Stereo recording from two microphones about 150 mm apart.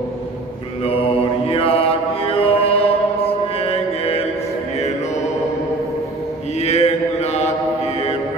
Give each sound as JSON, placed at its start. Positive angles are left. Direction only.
{"t": 0.8, "sound": "mantra", "side_deg": 40}
{"t": 6.6, "sound": "mantra", "side_deg": 45}